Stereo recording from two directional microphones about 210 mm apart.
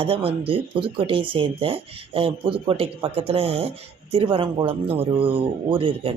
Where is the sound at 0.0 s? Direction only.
25° right (ahead or behind).